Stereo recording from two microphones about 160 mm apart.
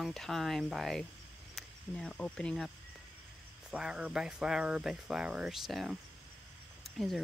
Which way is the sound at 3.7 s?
5° right (ahead or behind).